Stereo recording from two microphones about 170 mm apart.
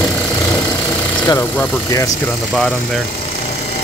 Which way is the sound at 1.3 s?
20° left (ahead or behind).